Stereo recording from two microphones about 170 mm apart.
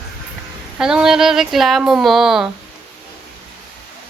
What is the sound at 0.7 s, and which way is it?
Speech, 5° right (ahead or behind).